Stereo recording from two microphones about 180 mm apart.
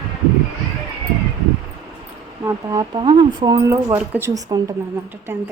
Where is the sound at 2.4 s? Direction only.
15° right (ahead or behind).